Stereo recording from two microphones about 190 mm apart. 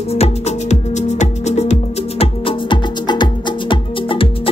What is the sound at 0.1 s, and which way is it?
Music, 35° left (ahead or behind).